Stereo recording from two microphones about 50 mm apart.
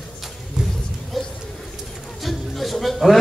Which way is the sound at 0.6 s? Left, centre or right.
Centre.